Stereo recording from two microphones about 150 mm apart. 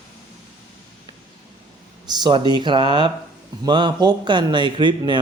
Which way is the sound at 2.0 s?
30° right (ahead or behind).